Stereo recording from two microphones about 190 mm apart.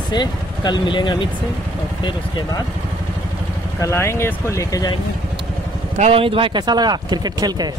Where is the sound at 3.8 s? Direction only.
15° left (ahead or behind).